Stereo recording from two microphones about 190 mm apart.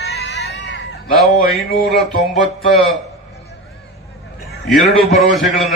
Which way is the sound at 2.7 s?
Centre (ahead or behind).